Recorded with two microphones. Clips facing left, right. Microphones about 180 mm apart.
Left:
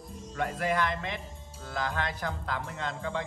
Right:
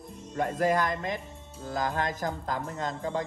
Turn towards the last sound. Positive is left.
turn(degrees=-40)  # may be behind; listen again after turning